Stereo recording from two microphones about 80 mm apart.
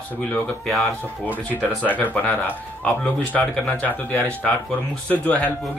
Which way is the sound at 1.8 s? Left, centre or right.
Left.